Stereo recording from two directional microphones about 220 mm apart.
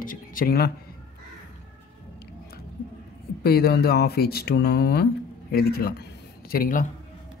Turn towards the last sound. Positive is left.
turn(degrees=40)  # may be behind; listen again after turning